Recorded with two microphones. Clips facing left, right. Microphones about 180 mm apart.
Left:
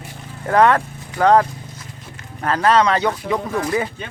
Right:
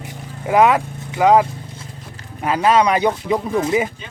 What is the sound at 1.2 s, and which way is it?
Speech, 5° right (ahead or behind).